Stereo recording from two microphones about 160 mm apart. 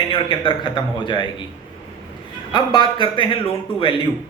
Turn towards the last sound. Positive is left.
turn(degrees=30)  # may be behind; listen again after turning